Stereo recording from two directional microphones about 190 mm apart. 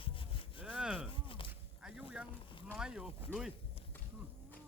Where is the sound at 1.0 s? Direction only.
25° left (ahead or behind).